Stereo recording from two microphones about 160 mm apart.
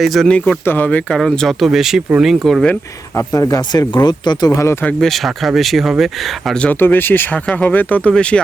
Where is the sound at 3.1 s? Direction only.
20° left (ahead or behind).